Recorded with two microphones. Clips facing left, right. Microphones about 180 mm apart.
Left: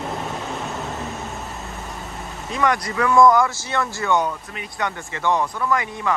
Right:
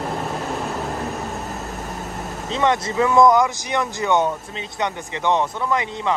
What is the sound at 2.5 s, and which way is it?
Speech, 25° right (ahead or behind).